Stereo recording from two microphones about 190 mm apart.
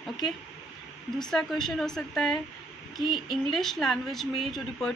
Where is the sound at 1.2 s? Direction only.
Centre (ahead or behind).